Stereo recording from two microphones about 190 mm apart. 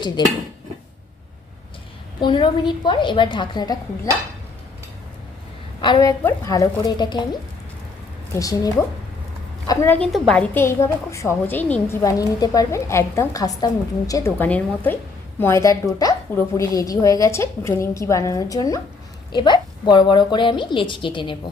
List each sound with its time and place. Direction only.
2.2 s a woman's voice: 25° left (ahead or behind)
5.8 s a woman's voice: 20° left (ahead or behind)
8.4 s a woman's voice: 20° left (ahead or behind)